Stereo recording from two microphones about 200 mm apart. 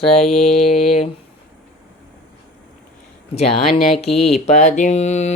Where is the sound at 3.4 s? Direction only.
30° left (ahead or behind).